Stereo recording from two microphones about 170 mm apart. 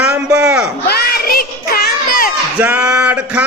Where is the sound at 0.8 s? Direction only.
65° left (ahead or behind).